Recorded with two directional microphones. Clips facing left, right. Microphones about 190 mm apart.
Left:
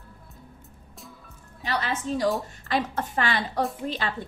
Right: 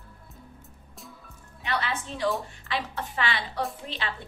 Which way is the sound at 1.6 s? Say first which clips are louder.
Left 3 dB; 40° left (ahead or behind).